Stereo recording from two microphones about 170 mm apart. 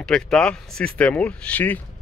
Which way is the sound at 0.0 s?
5° left (ahead or behind).